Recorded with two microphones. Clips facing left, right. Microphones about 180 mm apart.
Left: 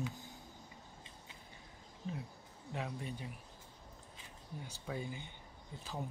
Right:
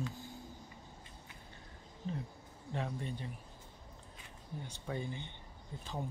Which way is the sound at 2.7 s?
5° left (ahead or behind).